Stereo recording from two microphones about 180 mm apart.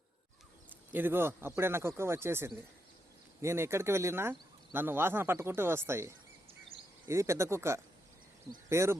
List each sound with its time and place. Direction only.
0.9 s speech: 10° right (ahead or behind)